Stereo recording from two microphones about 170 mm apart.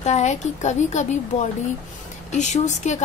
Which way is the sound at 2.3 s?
45° left (ahead or behind).